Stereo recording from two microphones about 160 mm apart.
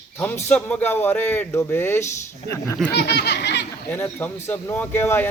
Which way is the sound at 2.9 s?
90° left.